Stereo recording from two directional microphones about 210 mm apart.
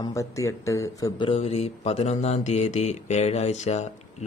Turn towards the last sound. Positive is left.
turn(degrees=35)  # may be behind; listen again after turning